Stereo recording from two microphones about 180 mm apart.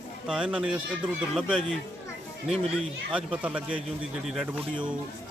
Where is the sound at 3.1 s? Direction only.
5° right (ahead or behind).